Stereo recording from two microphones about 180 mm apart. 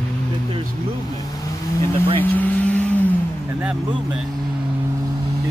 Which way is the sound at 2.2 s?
10° left (ahead or behind).